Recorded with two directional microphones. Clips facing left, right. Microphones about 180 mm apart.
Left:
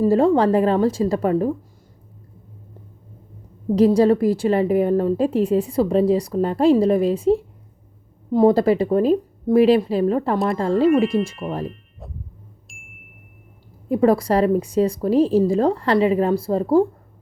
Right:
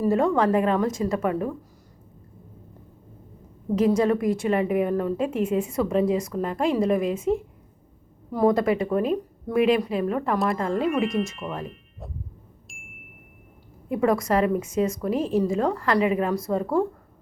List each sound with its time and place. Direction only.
0.0 s a woman's voice: 30° left (ahead or behind)
3.8 s a woman's voice: 35° left (ahead or behind)
10.3 s speech: centre (ahead or behind)
10.6 s a woman's voice: 35° left (ahead or behind)
12.6 s a sound: centre (ahead or behind)
13.8 s a woman's voice: 35° left (ahead or behind)